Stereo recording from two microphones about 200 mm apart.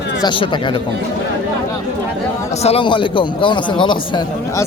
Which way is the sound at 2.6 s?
30° left (ahead or behind).